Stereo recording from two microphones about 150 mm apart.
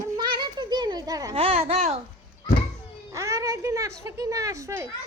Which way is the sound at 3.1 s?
20° right (ahead or behind).